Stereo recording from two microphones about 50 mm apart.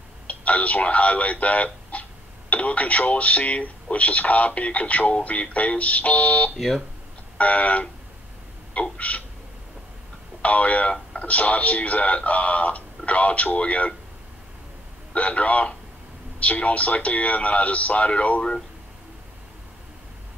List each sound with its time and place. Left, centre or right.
0.3 s speech: left
8.9 s speech: left
10.4 s speech: left
15.1 s speech: left